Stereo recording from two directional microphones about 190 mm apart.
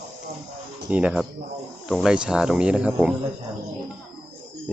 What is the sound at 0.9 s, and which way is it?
Speech, 5° right (ahead or behind).